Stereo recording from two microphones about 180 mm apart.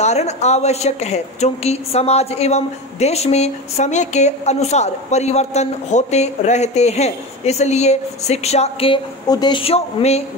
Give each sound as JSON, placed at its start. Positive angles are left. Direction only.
{"t": 0.0, "sound": "a woman's voice", "side_deg": 40}